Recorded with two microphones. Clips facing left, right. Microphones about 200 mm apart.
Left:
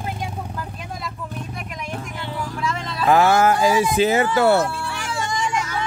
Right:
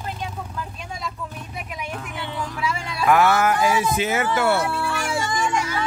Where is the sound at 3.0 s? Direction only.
30° left (ahead or behind).